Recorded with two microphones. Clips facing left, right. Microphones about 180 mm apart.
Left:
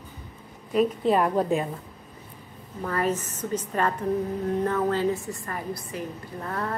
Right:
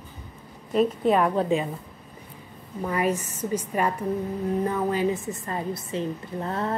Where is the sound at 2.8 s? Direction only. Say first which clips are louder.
Right 1 dB; 10° right (ahead or behind).